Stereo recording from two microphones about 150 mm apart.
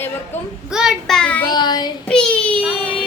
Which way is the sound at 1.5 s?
30° left (ahead or behind).